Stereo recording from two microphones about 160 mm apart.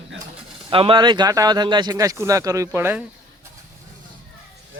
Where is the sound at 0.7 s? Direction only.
35° right (ahead or behind); by 3.0 s 15° right (ahead or behind).